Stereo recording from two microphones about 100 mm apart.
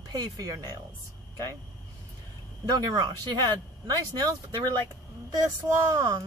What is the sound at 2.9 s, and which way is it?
Speech, 45° right (ahead or behind).